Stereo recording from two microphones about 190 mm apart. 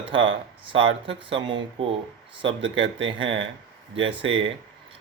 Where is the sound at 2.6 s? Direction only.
85° right.